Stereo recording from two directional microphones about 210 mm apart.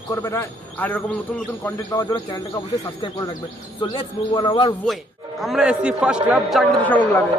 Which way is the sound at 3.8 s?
25° left (ahead or behind).